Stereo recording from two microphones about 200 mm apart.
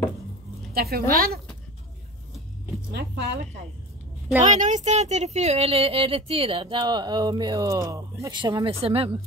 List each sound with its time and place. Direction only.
0.7 s a woman's voice: 50° right (ahead or behind)
2.9 s speech: 55° right (ahead or behind)
4.4 s speech: 35° right (ahead or behind)